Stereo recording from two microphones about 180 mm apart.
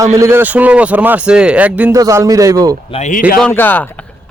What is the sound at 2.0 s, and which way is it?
Speech, 20° right (ahead or behind).